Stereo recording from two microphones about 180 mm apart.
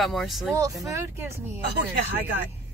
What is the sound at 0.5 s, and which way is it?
Speech, 20° right (ahead or behind).